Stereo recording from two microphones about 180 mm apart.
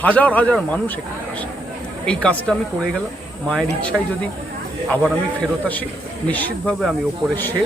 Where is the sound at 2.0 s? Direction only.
5° left (ahead or behind).